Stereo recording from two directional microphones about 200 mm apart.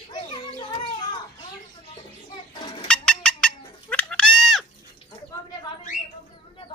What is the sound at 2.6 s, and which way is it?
Bird, 20° left (ahead or behind).